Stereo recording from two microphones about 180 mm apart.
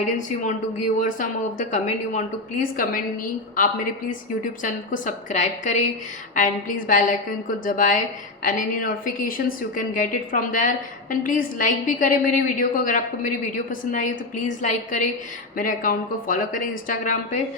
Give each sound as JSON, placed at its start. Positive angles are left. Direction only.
{"t": 0.2, "sound": "a woman's voice", "side_deg": 45}
{"t": 4.6, "sound": "a woman's voice", "side_deg": 45}